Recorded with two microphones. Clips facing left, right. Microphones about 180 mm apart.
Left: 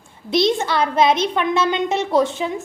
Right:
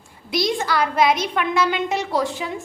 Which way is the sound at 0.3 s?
25° left (ahead or behind).